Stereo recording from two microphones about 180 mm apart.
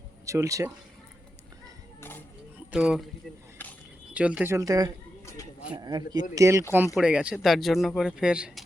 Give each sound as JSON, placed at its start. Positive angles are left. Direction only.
{"t": 0.3, "sound": "speech", "side_deg": -15}
{"t": 2.0, "sound": "music", "side_deg": 10}
{"t": 2.7, "sound": "speech", "side_deg": -5}
{"t": 4.1, "sound": "speech", "side_deg": -5}
{"t": 6.9, "sound": "speech", "side_deg": -5}